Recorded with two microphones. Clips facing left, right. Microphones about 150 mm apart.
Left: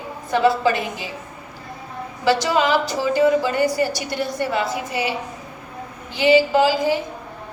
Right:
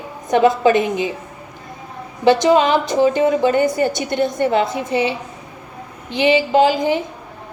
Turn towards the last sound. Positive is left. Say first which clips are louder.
# right 3 dB
turn(degrees=-20)  # may be behind; listen again after turning